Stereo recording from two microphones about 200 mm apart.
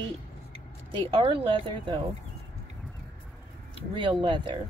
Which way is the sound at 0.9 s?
25° right (ahead or behind).